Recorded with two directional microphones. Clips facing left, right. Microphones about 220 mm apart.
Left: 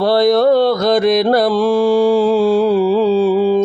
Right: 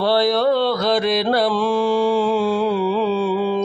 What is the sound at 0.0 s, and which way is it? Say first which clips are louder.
Mantra: left 5 dB; 45° left (ahead or behind).